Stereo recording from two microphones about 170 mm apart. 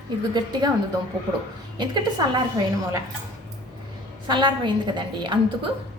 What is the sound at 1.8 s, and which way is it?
A woman's voice, 25° right (ahead or behind).